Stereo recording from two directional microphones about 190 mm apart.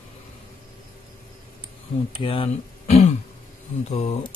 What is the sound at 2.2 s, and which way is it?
Speech, 30° left (ahead or behind).